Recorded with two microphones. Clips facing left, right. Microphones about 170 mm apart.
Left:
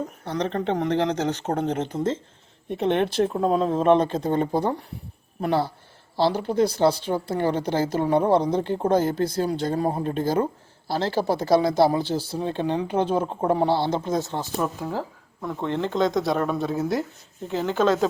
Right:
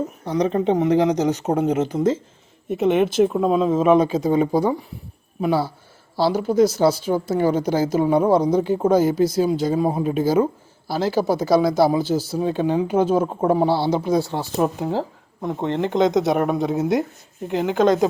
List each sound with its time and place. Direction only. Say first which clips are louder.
0.3 s a woman's voice: right 6 dB; 10° right (ahead or behind)
14.6 s speech: right 8 dB; 25° right (ahead or behind)